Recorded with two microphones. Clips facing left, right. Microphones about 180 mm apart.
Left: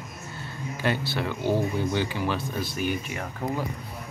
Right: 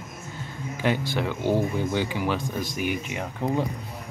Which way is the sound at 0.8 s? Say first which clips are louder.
Right 2 dB; 15° right (ahead or behind).